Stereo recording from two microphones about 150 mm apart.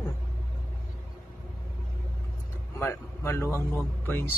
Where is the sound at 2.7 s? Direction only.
15° left (ahead or behind).